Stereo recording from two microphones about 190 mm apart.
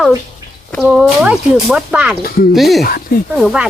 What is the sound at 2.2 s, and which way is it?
Speech, 50° left (ahead or behind).